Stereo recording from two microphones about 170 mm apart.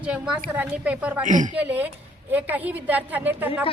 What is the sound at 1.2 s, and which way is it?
Speech, 45° right (ahead or behind).